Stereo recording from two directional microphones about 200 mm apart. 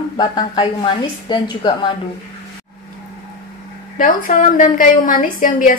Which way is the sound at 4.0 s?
40° left (ahead or behind).